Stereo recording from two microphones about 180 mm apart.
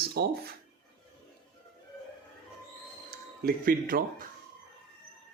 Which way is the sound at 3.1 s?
55° right (ahead or behind).